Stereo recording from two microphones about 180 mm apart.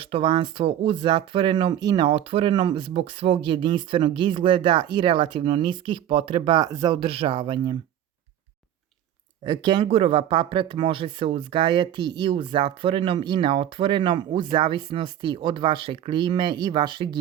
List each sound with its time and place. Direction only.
0.0 s speech: 30° right (ahead or behind)
9.4 s speech: 25° right (ahead or behind)